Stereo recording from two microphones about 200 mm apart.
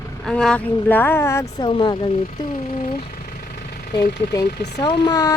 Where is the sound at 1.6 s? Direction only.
25° left (ahead or behind).